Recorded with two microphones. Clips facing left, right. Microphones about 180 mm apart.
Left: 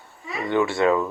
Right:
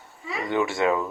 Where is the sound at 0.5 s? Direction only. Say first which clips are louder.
Left 3 dB; 20° right (ahead or behind).